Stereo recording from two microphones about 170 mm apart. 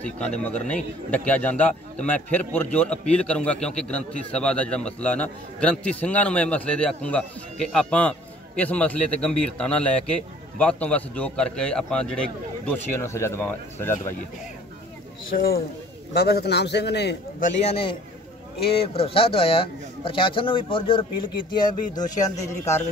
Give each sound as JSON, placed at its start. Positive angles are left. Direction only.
{"t": 0.0, "sound": "a man's voice", "side_deg": 5}
{"t": 15.3, "sound": "a man's voice", "side_deg": 65}
{"t": 17.4, "sound": "a man's voice", "side_deg": 40}